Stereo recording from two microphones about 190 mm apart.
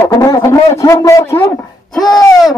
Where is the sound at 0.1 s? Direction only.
15° left (ahead or behind).